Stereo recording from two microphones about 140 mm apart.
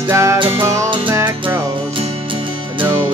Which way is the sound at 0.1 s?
20° right (ahead or behind).